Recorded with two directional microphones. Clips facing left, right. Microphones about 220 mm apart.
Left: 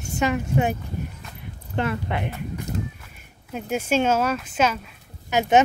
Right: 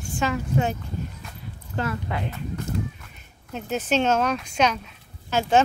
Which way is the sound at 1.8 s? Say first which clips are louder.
Left 2 dB; 20° left (ahead or behind).